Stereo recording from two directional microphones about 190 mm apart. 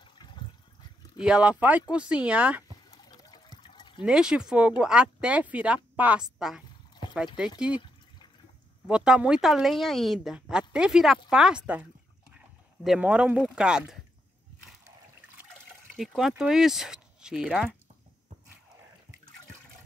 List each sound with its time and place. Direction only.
1.2 s speech: 5° right (ahead or behind)
2.9 s a sound: 20° left (ahead or behind)
4.0 s a woman's voice: 5° right (ahead or behind)
8.8 s a woman's voice: 5° right (ahead or behind)
16.0 s a woman's voice: centre (ahead or behind)